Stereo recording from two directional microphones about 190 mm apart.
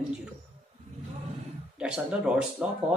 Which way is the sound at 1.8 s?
5° right (ahead or behind).